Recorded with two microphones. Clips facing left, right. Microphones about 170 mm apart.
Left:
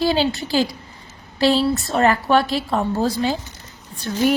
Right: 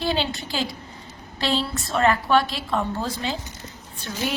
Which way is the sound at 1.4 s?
35° left (ahead or behind).